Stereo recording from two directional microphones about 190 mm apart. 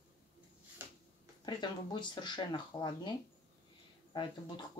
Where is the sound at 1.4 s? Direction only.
25° left (ahead or behind).